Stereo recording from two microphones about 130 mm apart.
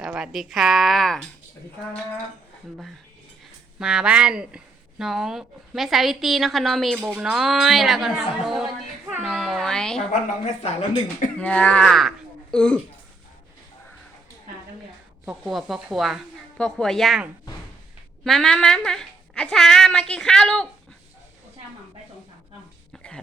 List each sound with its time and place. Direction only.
0.0 s a woman's voice: 5° right (ahead or behind)
3.8 s a woman's voice: 5° right (ahead or behind)
10.1 s speech: 55° left (ahead or behind)
11.3 s speech: 10° left (ahead or behind)
15.3 s a woman's voice: 5° right (ahead or behind)
18.3 s a woman's voice: 5° left (ahead or behind)
22.9 s throat clearing: 5° left (ahead or behind)